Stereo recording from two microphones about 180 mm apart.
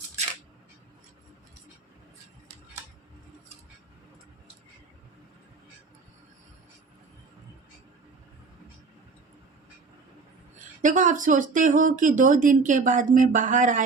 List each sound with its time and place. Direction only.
10.8 s speech: 45° right (ahead or behind)